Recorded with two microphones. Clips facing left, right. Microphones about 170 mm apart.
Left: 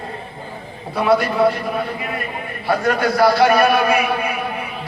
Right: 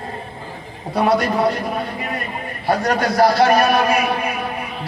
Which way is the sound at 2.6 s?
40° right (ahead or behind).